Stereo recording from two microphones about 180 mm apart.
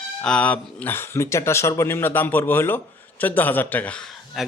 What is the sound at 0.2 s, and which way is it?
A man's voice, 5° left (ahead or behind).